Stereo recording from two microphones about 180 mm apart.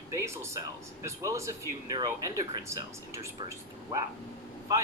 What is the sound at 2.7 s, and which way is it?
Speech, 15° right (ahead or behind).